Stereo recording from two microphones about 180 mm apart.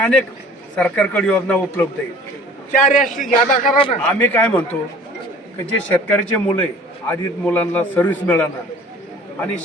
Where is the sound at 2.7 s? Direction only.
45° left (ahead or behind).